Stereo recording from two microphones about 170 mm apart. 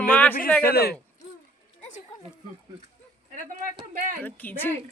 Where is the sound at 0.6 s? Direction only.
65° left (ahead or behind).